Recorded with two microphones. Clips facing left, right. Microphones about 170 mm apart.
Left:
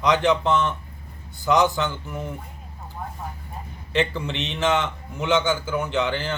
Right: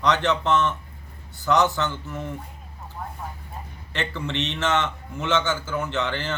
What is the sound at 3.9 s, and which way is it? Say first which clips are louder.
A man's voice: left 4 dB; 15° left (ahead or behind).